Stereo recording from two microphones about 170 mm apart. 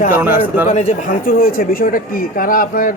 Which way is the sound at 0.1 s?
10° right (ahead or behind).